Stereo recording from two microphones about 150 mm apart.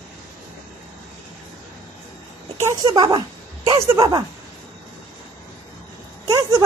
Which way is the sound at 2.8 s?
30° right (ahead or behind).